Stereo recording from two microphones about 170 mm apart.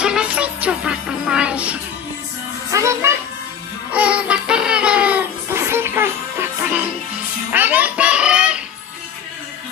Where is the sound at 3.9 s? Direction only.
10° right (ahead or behind).